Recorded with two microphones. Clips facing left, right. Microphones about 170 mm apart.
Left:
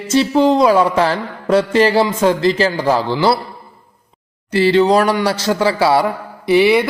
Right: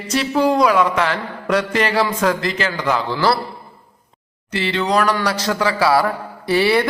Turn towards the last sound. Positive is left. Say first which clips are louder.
# left 4 dB
turn(degrees=15)  # may be behind; listen again after turning